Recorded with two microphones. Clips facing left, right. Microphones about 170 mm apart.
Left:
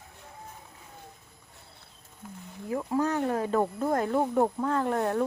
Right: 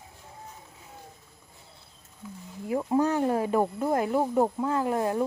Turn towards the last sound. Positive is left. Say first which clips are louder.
# right 1 dB
turn(degrees=-5)  # may be behind; listen again after turning